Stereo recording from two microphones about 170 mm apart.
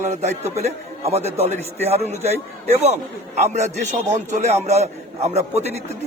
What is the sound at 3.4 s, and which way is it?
A man's voice, 45° right (ahead or behind).